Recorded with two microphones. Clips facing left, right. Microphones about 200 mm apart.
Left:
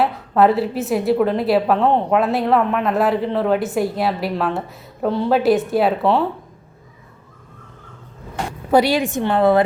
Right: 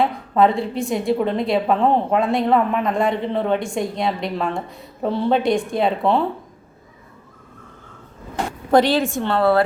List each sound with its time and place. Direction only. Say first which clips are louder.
0.0 s a woman's voice: left 1 dB; 5° left (ahead or behind)
8.7 s a woman's voice: even; 10° left (ahead or behind)